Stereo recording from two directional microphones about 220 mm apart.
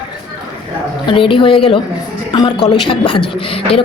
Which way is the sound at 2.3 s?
20° left (ahead or behind).